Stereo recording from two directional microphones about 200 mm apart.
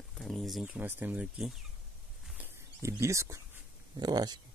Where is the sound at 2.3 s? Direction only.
10° right (ahead or behind).